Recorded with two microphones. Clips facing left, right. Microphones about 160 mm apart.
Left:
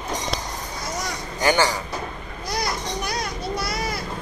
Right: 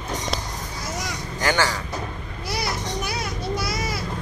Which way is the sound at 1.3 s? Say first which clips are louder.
Left 3 dB; 15° left (ahead or behind).